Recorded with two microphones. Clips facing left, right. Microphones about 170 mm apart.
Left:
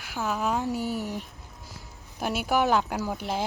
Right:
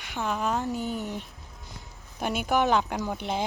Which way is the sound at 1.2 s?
Centre (ahead or behind).